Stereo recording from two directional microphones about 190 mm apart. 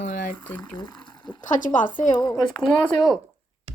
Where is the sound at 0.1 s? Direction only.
45° left (ahead or behind).